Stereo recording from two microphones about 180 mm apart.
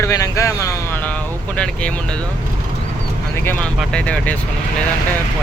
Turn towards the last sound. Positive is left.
turn(degrees=5)  # may be behind; listen again after turning